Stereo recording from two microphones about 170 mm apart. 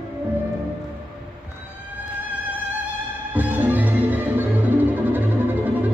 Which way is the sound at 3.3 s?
10° right (ahead or behind).